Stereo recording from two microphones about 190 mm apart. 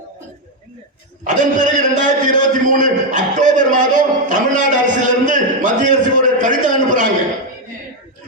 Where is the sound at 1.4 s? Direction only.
45° right (ahead or behind).